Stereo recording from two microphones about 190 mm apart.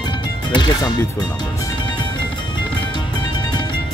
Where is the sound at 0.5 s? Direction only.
20° left (ahead or behind).